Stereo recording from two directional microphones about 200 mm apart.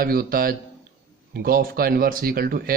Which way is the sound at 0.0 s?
50° right (ahead or behind).